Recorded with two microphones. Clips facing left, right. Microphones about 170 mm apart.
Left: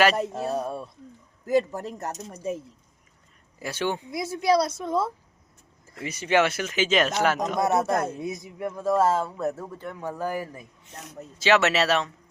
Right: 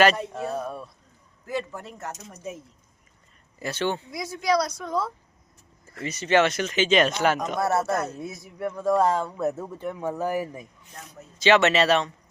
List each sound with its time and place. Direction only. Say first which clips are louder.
0.2 s speech: left 3 dB; 35° left (ahead or behind)
1.5 s speech: left 8 dB; 40° left (ahead or behind)
3.6 s speech: right 1 dB; 10° left (ahead or behind)
4.2 s a woman's voice: left 2 dB; 25° left (ahead or behind)
6.0 s speech: right 1 dB; 10° left (ahead or behind)
7.6 s speech: left 2 dB; 20° left (ahead or behind); by 10.7 s 10° right (ahead or behind)
11.3 s speech: right 2 dB; 5° left (ahead or behind)